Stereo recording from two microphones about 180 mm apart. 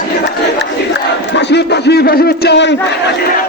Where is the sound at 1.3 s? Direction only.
70° left (ahead or behind).